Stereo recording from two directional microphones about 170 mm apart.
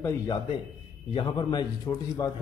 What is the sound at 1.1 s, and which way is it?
Speech, 25° left (ahead or behind).